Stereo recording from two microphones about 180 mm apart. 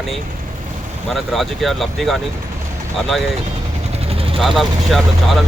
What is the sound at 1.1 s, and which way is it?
Speech, centre (ahead or behind).